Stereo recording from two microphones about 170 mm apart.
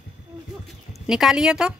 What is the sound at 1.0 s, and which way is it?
Speech, 5° right (ahead or behind).